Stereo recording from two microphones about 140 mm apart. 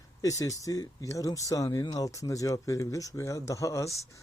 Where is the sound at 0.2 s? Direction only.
25° left (ahead or behind).